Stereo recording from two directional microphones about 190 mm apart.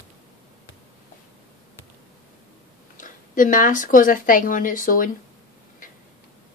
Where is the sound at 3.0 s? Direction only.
45° left (ahead or behind).